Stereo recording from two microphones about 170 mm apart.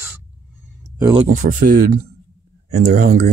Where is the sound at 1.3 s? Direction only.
50° right (ahead or behind).